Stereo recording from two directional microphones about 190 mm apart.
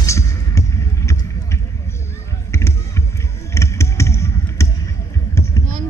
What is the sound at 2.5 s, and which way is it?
Basketball bounce, 15° left (ahead or behind).